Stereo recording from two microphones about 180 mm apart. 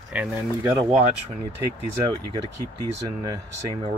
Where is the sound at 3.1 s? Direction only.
25° right (ahead or behind).